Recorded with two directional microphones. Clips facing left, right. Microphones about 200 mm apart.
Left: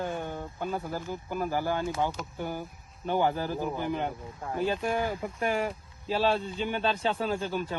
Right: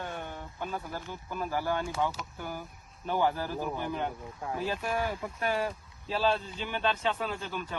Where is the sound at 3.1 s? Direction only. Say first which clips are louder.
Left 2 dB; 20° left (ahead or behind).